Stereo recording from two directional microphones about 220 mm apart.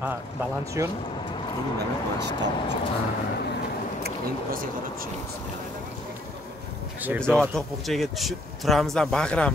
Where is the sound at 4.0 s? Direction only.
40° right (ahead or behind).